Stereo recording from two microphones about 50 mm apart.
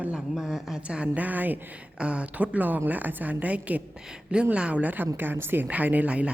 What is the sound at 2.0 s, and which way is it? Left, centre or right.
A woman's voice, right.